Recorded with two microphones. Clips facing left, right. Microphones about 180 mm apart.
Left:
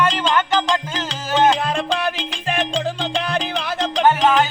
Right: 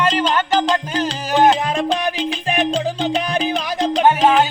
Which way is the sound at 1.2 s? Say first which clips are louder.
Right 1 dB; 15° right (ahead or behind).